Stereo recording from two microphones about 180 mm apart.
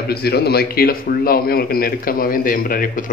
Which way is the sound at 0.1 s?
60° left (ahead or behind).